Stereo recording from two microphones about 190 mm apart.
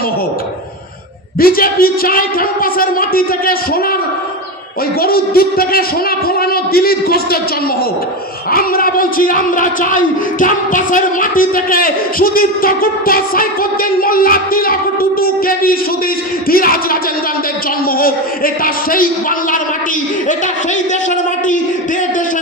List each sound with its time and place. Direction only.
1.4 s speech: 50° left (ahead or behind)
5.0 s speech: 50° left (ahead or behind)
8.5 s speech: 50° left (ahead or behind)